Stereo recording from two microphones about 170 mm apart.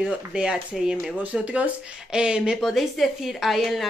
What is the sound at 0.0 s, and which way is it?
Speech, 5° right (ahead or behind).